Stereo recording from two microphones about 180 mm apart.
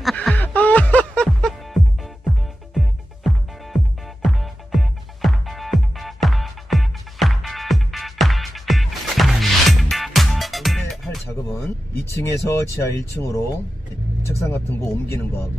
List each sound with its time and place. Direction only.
0.0 s music: 5° left (ahead or behind)
12.1 s speech: 15° left (ahead or behind)